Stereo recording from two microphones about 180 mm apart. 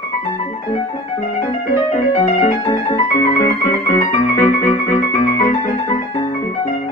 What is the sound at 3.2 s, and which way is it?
Music, 15° left (ahead or behind).